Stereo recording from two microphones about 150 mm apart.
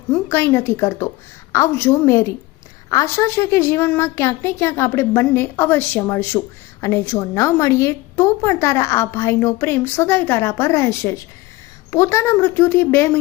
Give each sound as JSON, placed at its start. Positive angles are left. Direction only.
{"t": 0.3, "sound": "a woman's voice", "side_deg": 15}